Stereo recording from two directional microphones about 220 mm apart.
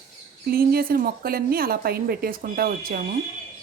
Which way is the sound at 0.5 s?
40° right (ahead or behind).